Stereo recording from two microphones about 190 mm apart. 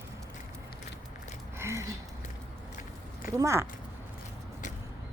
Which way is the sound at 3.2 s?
15° right (ahead or behind).